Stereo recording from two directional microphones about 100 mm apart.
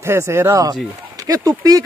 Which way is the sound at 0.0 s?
25° right (ahead or behind).